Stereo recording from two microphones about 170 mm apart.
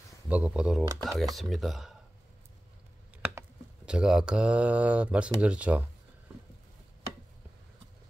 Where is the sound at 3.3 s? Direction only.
10° right (ahead or behind).